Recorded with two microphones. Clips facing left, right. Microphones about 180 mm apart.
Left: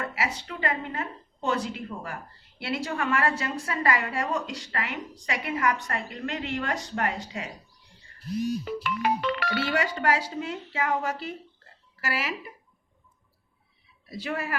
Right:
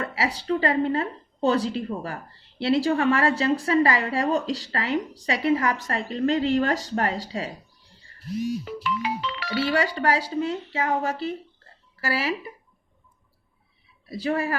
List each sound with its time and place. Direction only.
0.0 s a woman's voice: 30° right (ahead or behind)
8.8 s speech: 55° left (ahead or behind)
9.7 s a woman's voice: 35° right (ahead or behind)
14.1 s a woman's voice: 30° right (ahead or behind)